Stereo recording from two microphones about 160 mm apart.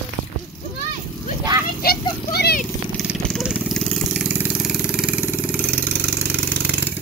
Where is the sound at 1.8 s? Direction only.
75° left (ahead or behind).